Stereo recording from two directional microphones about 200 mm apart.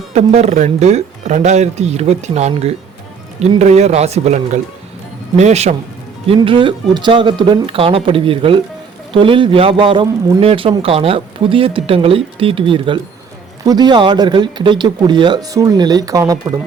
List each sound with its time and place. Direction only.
0.1 s a man's voice: 35° right (ahead or behind); by 16.4 s 15° right (ahead or behind)